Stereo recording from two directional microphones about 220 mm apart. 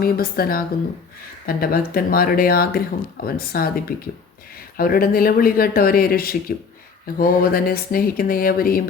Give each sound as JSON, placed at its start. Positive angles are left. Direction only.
{"t": 0.0, "sound": "speech", "side_deg": 40}